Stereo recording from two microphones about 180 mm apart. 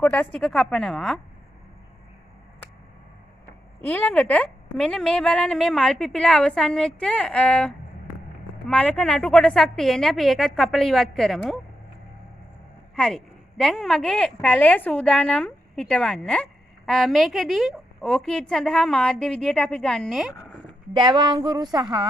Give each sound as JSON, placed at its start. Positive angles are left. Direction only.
{"t": 0.0, "sound": "speech", "side_deg": 5}
{"t": 3.8, "sound": "speech", "side_deg": 10}
{"t": 12.9, "sound": "speech", "side_deg": 5}
{"t": 20.9, "sound": "speech", "side_deg": -25}